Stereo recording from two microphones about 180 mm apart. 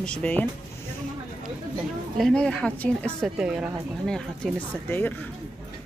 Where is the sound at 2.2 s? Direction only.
5° left (ahead or behind).